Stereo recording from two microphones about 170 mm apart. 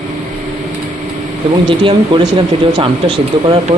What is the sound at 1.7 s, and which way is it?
Speech, 30° right (ahead or behind).